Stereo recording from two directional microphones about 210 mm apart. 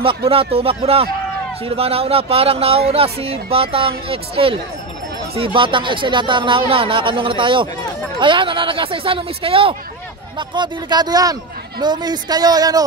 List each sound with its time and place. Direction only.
0.0 s speech: 25° right (ahead or behind)